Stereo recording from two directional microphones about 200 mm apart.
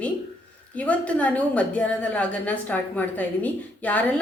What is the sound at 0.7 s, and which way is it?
A woman's voice, 5° left (ahead or behind).